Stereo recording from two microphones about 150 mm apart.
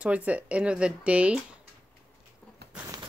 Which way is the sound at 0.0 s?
10° right (ahead or behind).